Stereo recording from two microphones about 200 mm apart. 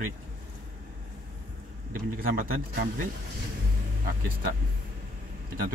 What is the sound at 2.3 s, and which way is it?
Speech, 50° right (ahead or behind).